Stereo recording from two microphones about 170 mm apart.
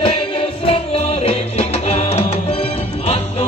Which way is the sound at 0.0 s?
30° left (ahead or behind).